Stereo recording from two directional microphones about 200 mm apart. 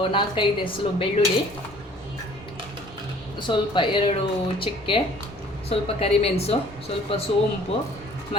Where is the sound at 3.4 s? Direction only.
25° left (ahead or behind).